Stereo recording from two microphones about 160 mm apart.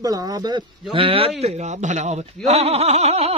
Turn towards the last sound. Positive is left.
turn(degrees=-40)  # may be behind; listen again after turning